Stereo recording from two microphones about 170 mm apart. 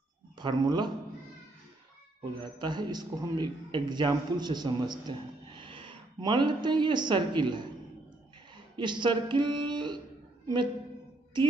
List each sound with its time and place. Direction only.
0.4 s a man's voice: 25° right (ahead or behind)
2.6 s a man's voice: 25° right (ahead or behind)
8.7 s speech: 25° right (ahead or behind)
11.3 s a man's voice: 25° right (ahead or behind)